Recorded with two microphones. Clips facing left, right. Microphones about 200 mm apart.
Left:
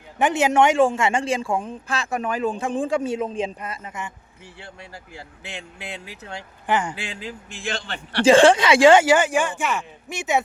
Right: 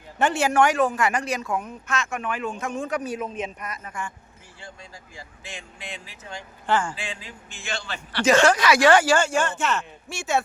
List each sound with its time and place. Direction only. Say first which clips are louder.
0.2 s speech: left 2 dB; 20° left (ahead or behind)
4.6 s speech: left 1 dB; 65° left (ahead or behind)
6.7 s speech: left 1 dB; 20° left (ahead or behind)
6.9 s speech: left 3 dB; 75° left (ahead or behind)
8.2 s speech: left 5 dB; 30° left (ahead or behind)